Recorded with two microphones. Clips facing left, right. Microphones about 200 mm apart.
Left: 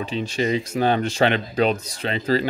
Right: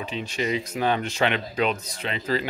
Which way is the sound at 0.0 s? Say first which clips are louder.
Left 5 dB; 30° left (ahead or behind).